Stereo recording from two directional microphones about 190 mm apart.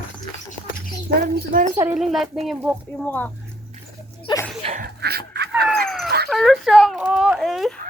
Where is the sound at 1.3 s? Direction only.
45° right (ahead or behind).